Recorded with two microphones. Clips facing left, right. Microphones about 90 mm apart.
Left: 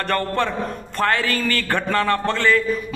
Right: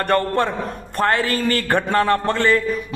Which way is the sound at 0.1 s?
20° right (ahead or behind).